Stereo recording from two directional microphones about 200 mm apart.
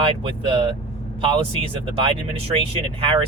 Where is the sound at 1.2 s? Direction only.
25° right (ahead or behind).